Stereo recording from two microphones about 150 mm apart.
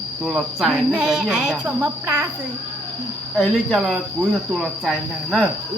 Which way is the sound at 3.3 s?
5° left (ahead or behind).